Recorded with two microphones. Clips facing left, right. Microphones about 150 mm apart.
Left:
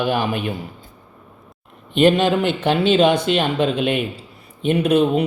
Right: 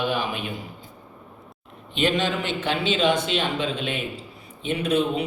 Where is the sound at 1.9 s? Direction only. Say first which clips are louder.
Left 8 dB; 60° left (ahead or behind).